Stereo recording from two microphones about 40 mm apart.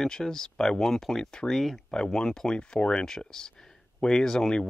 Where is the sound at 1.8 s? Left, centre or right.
Centre.